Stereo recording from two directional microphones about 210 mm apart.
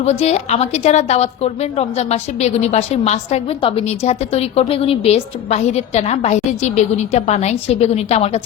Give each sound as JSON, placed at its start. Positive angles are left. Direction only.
{"t": 0.0, "sound": "a woman's voice", "side_deg": 30}